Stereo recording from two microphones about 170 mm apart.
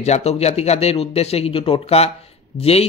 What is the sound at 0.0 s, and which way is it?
A man's voice, 40° left (ahead or behind).